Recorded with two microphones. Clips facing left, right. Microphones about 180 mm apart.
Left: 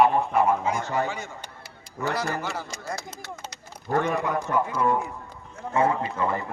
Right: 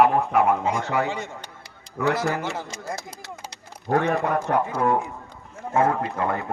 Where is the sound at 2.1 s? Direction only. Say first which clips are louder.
Right 3 dB; 15° right (ahead or behind).